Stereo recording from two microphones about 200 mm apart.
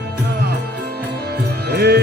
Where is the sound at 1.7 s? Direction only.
55° right (ahead or behind).